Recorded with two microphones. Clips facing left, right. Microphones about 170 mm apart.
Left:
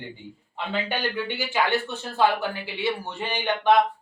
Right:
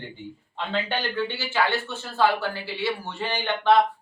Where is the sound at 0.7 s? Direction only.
15° left (ahead or behind).